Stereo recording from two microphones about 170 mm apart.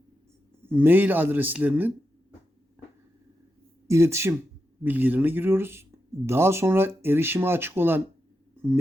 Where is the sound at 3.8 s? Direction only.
15° right (ahead or behind).